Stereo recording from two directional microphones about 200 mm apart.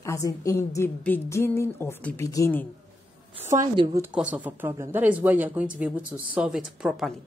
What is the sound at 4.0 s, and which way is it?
Speech, 5° right (ahead or behind).